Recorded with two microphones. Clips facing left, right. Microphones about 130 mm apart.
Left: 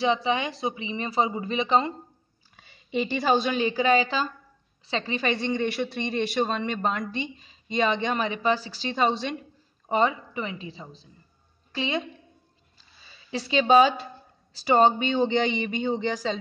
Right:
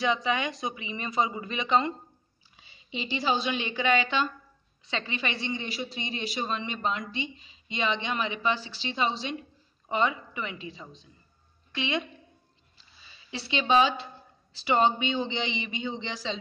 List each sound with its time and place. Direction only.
0.0 s speech: 30° left (ahead or behind)
2.5 s a woman's voice: 50° left (ahead or behind)
9.8 s speech: 40° left (ahead or behind)
13.3 s speech: 40° left (ahead or behind)